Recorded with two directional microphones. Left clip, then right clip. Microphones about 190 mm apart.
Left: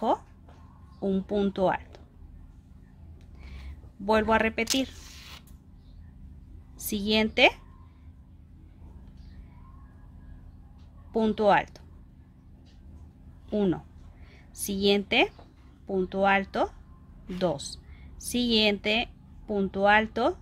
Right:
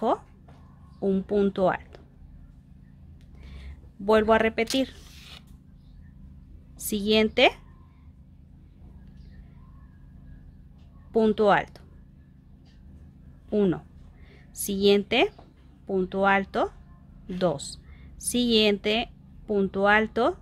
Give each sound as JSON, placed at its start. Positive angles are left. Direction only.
{"t": 0.9, "sound": "a woman's voice", "side_deg": -20}
{"t": 4.0, "sound": "a woman's voice", "side_deg": -25}
{"t": 6.8, "sound": "a woman's voice", "side_deg": -20}
{"t": 11.1, "sound": "a woman's voice", "side_deg": -20}
{"t": 13.5, "sound": "a woman's voice", "side_deg": -20}